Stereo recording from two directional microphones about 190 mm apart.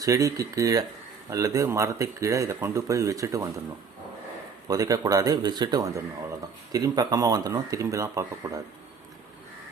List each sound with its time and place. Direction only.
0.0 s speech: 20° right (ahead or behind)
4.7 s speech: 20° right (ahead or behind)